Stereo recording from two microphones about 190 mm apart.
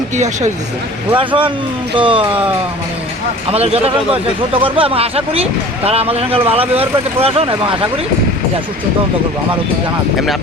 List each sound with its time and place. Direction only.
1.1 s speech: 25° right (ahead or behind)
3.5 s speech: 35° right (ahead or behind)